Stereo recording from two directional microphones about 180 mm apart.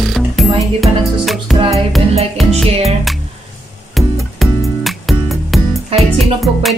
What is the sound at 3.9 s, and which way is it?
Music, centre (ahead or behind).